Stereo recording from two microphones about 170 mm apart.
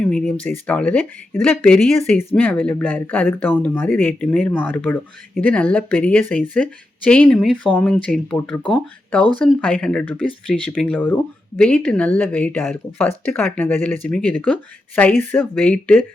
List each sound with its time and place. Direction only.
0.0 s speech: 5° left (ahead or behind)
9.4 s speech: 10° left (ahead or behind)